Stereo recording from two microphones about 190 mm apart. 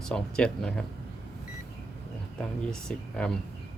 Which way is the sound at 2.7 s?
5° left (ahead or behind).